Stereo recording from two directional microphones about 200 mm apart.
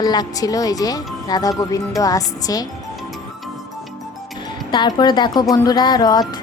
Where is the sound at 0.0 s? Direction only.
20° left (ahead or behind).